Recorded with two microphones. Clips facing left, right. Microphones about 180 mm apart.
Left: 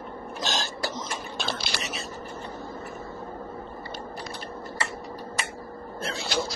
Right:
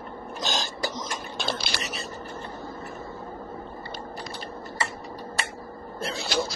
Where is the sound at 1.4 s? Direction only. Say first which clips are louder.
Right 3 dB; centre (ahead or behind).